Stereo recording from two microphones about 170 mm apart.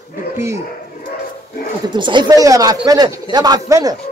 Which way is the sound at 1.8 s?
25° right (ahead or behind).